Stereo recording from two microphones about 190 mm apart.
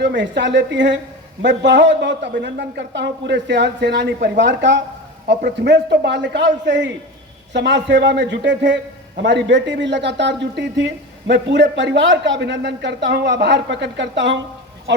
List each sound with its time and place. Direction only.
0.0 s speech: 70° right (ahead or behind)
5.3 s speech: 60° right (ahead or behind)